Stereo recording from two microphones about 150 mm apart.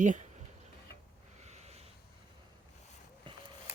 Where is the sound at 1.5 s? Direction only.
45° right (ahead or behind).